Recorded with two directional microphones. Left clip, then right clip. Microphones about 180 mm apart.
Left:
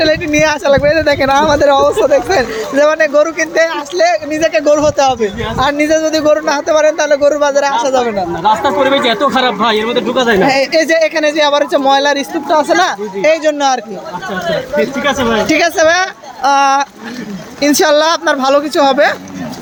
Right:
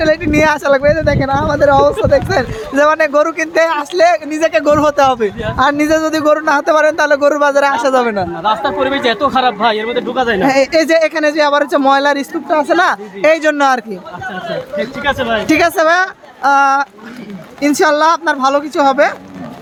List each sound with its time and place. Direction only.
0.0 s a man's voice: 35° right (ahead or behind)
1.0 s speech: 10° right (ahead or behind); by 8.3 s 45° right (ahead or behind)
8.4 s speech: 10° right (ahead or behind)
10.4 s a man's voice: 35° right (ahead or behind)
14.8 s speech: 5° right (ahead or behind)
15.4 s a woman's voice: 35° right (ahead or behind); by 19.1 s 10° right (ahead or behind)